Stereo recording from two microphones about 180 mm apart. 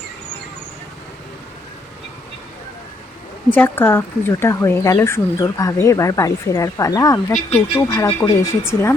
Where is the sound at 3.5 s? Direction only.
10° left (ahead or behind).